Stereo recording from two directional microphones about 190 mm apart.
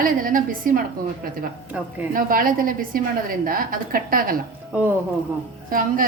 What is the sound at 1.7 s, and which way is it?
Speech, 5° right (ahead or behind).